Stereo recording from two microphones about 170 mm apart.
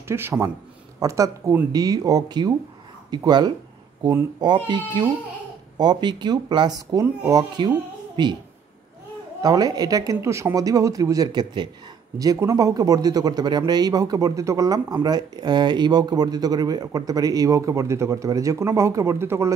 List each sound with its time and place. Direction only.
0.1 s a man's voice: 15° right (ahead or behind)
9.4 s a man's voice: 20° right (ahead or behind)